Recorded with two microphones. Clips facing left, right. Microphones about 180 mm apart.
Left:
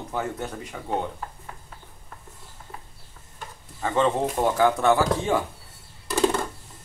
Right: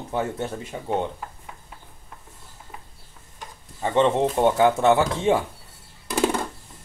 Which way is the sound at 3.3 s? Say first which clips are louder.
Left 1 dB; 25° right (ahead or behind).